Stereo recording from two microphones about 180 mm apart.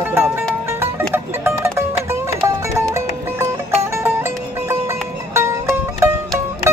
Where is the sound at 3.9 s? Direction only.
15° right (ahead or behind).